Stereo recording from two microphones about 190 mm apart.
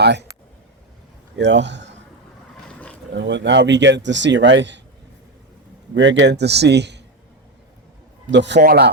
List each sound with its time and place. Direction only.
0.0 s speech: 65° right (ahead or behind)
1.4 s a man's voice: 65° right (ahead or behind)
2.6 s roaring cats: 5° left (ahead or behind)
3.2 s a man's voice: 70° right (ahead or behind)
5.9 s a man's voice: 70° right (ahead or behind)
8.3 s a man's voice: 65° right (ahead or behind)